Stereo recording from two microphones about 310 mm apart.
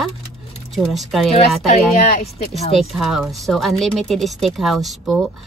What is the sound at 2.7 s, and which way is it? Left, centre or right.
A woman's voice, centre.